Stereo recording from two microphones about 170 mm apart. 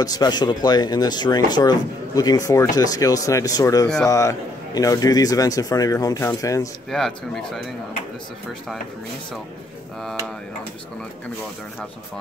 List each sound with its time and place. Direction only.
0.0 s a man's voice: 25° left (ahead or behind)
6.9 s a man's voice: centre (ahead or behind)